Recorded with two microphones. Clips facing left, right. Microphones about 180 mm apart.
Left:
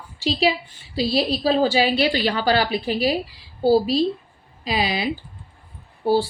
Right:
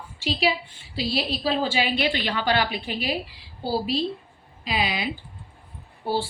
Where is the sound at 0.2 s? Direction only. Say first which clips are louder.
Left 4 dB; 35° left (ahead or behind).